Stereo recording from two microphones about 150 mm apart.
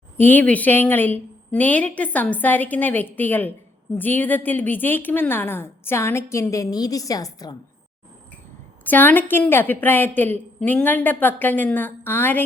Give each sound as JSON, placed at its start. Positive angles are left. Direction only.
{"t": 0.2, "sound": "a woman's voice", "side_deg": 10}
{"t": 8.8, "sound": "a woman's voice", "side_deg": 10}